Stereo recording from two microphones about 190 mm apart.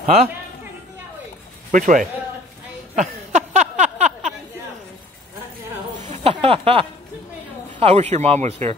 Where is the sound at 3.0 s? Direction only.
40° right (ahead or behind).